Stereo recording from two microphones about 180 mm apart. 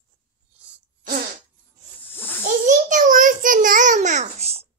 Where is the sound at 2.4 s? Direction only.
45° right (ahead or behind).